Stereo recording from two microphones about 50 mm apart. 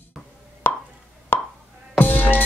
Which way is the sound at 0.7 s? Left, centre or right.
Left.